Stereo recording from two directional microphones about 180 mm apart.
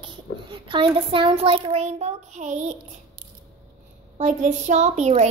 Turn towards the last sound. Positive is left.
turn(degrees=-40)  # may be behind; listen again after turning